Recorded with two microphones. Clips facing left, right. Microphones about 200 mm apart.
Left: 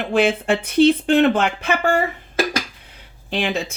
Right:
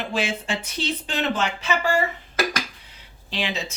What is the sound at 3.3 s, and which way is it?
Speech, 55° left (ahead or behind).